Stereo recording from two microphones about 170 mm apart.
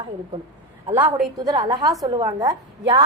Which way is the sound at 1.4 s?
25° right (ahead or behind).